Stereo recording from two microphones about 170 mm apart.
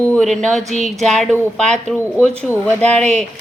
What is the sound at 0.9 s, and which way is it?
Speech, centre (ahead or behind).